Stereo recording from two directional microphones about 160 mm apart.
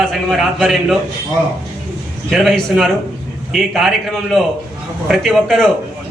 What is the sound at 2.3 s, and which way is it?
A man's voice, centre (ahead or behind).